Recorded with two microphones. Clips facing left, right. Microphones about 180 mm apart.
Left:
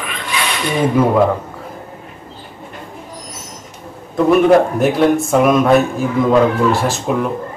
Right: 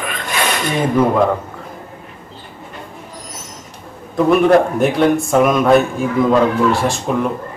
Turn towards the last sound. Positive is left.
turn(degrees=0)  # may be behind; listen again after turning